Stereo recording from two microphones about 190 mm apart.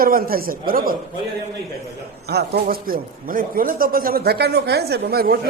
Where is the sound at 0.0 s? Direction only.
50° right (ahead or behind).